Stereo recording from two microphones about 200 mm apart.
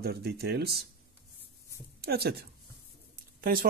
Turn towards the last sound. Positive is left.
turn(degrees=-45)  # may be behind; listen again after turning